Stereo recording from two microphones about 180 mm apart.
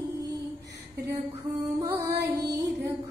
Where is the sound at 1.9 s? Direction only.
20° right (ahead or behind).